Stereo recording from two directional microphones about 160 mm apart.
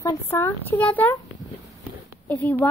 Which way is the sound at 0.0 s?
20° left (ahead or behind).